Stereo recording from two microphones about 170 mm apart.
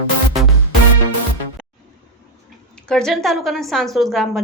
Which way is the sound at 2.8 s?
5° left (ahead or behind).